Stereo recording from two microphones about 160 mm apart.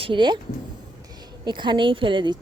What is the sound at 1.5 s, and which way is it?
Speech, 30° right (ahead or behind).